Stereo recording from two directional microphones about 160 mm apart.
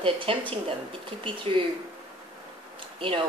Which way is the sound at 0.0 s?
35° right (ahead or behind).